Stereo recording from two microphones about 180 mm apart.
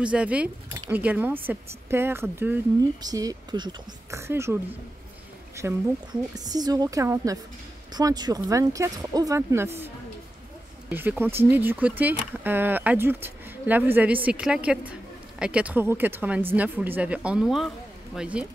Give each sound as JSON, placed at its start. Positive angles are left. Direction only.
{"t": 0.0, "sound": "speech", "side_deg": -5}
{"t": 5.6, "sound": "speech", "side_deg": -15}
{"t": 10.9, "sound": "speech", "side_deg": -10}